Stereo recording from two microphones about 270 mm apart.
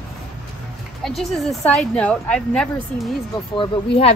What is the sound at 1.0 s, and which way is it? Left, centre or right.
A woman's voice, centre.